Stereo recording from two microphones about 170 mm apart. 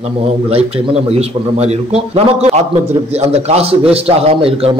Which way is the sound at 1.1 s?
40° right (ahead or behind).